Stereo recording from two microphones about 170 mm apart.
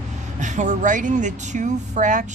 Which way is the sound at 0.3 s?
45° right (ahead or behind).